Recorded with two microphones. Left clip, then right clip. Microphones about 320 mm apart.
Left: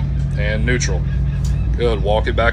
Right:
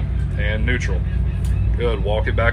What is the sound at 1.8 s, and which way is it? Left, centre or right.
Speech, centre.